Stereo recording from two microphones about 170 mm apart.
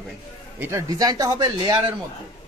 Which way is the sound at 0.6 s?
15° right (ahead or behind).